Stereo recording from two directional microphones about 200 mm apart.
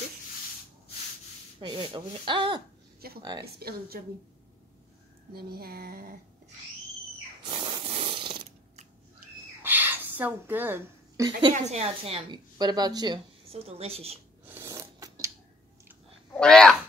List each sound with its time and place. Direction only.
1.6 s a woman's voice: 25° right (ahead or behind)
3.5 s speech: 50° right (ahead or behind)
5.3 s speech: 50° right (ahead or behind)
7.4 s snoring: 25° right (ahead or behind)
9.6 s a sound: 10° right (ahead or behind)
11.5 s a woman's voice: 35° right (ahead or behind)
14.4 s a sound: 10° right (ahead or behind)
16.3 s speech: 5° left (ahead or behind)